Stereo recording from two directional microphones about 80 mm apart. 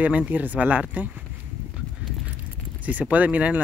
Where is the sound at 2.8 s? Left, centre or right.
Centre.